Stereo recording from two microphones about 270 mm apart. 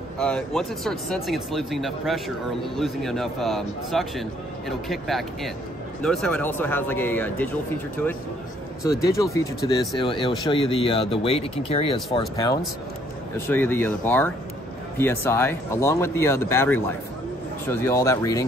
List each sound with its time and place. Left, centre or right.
0.2 s a man's voice: centre
9.0 s speech: centre
13.5 s speech: centre